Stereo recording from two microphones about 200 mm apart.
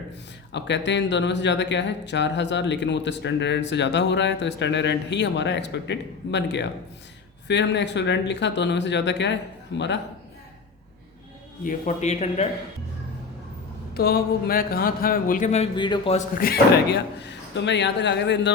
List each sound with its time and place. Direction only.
0.5 s speech: 60° left (ahead or behind)
11.6 s speech: 40° left (ahead or behind)
13.9 s speech: 50° left (ahead or behind); by 16.1 s 25° left (ahead or behind)
16.1 s speech: 45° left (ahead or behind)